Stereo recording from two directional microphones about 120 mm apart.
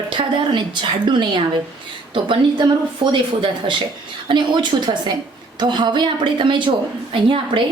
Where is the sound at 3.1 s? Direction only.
45° right (ahead or behind).